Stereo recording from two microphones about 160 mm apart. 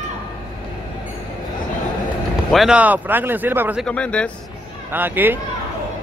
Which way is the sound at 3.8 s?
5° left (ahead or behind).